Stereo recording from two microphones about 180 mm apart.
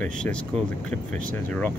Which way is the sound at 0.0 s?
5° left (ahead or behind).